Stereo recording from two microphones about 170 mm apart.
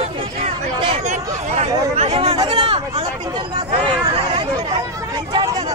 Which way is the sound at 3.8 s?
30° right (ahead or behind).